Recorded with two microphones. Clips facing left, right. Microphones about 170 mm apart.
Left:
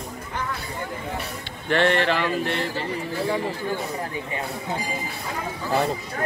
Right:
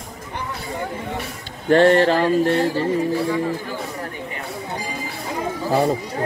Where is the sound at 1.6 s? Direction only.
40° right (ahead or behind).